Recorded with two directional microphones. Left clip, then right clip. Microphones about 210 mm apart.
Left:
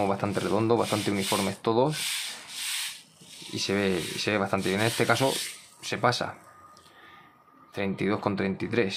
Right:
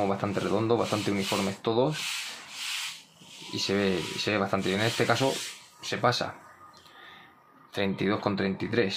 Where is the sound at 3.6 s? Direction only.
10° left (ahead or behind).